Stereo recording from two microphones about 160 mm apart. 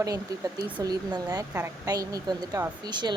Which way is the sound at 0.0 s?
20° right (ahead or behind).